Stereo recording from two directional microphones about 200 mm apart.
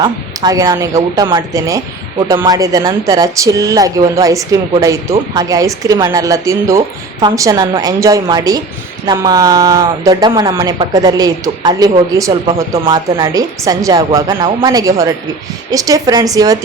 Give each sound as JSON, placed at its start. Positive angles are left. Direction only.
{"t": 0.0, "sound": "speech", "side_deg": -20}